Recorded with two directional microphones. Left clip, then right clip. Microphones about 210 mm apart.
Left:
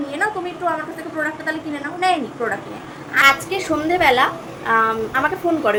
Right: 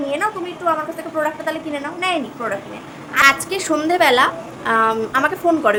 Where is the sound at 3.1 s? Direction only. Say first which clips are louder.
Even; 15° right (ahead or behind).